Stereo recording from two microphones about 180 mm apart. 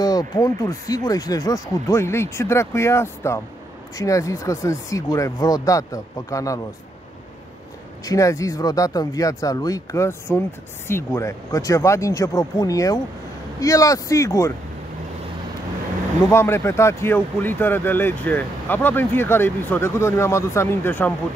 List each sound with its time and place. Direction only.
0.0 s speech: 20° left (ahead or behind)
8.0 s speech: 20° left (ahead or behind)
16.3 s speech: 15° left (ahead or behind)